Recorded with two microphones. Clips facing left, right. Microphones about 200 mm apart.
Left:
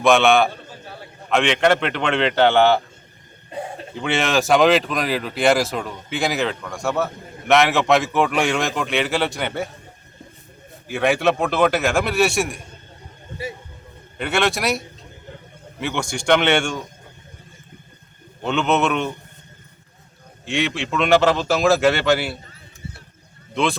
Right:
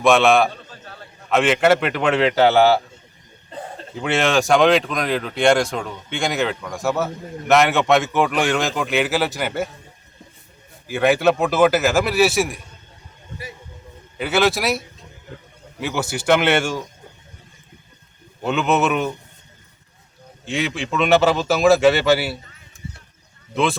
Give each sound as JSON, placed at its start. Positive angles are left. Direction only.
{"t": 0.0, "sound": "speech", "side_deg": 0}
{"t": 3.9, "sound": "speech", "side_deg": 0}
{"t": 10.8, "sound": "speech", "side_deg": 0}
{"t": 13.4, "sound": "speech", "side_deg": 25}
{"t": 14.2, "sound": "speech", "side_deg": 0}
{"t": 18.4, "sound": "speech", "side_deg": -5}
{"t": 20.4, "sound": "speech", "side_deg": 0}